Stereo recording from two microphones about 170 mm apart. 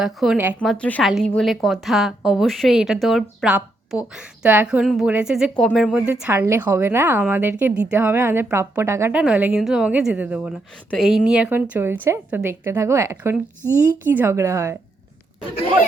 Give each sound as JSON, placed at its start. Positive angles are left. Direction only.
{"t": 0.0, "sound": "a woman's voice", "side_deg": 0}